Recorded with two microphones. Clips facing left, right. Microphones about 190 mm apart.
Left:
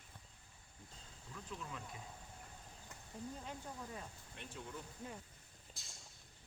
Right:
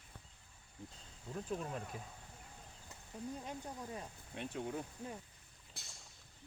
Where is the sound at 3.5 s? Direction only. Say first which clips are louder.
Right 3 dB; 25° right (ahead or behind).